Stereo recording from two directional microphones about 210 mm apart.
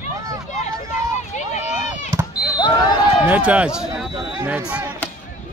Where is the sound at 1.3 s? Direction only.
35° left (ahead or behind).